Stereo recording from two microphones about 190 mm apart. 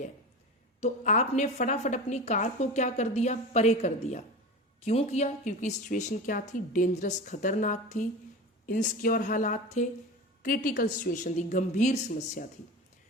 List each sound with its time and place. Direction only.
0.8 s a woman's voice: 35° left (ahead or behind)